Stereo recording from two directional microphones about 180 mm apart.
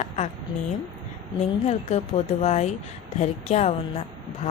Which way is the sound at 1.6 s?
35° left (ahead or behind).